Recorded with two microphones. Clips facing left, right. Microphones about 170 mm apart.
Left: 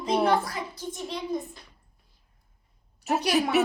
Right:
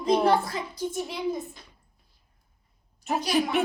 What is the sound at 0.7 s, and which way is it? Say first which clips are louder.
Speech: right 4 dB; 10° right (ahead or behind).